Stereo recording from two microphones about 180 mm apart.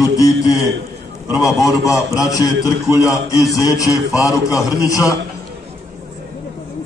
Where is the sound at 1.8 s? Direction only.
15° left (ahead or behind).